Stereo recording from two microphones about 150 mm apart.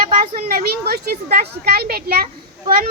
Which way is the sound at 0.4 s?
85° right.